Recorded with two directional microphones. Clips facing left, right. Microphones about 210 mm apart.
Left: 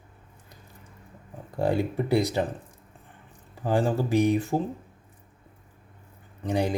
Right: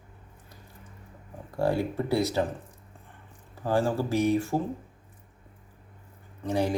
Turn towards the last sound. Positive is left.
turn(degrees=15)  # may be behind; listen again after turning